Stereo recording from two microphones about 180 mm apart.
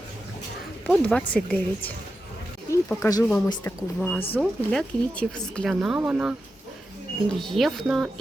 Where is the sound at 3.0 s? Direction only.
20° left (ahead or behind).